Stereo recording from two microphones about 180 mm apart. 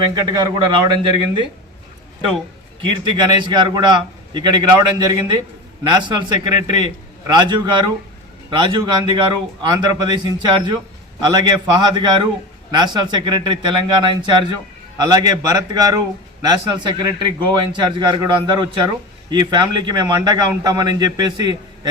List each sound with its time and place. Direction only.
0.0 s a man's voice: 25° right (ahead or behind)
2.8 s a man's voice: 25° right (ahead or behind)